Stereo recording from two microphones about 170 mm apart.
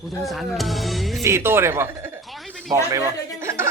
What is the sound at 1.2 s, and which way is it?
Speech, 15° right (ahead or behind).